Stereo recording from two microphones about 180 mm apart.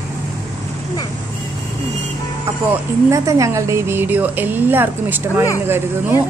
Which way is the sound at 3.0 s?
15° right (ahead or behind).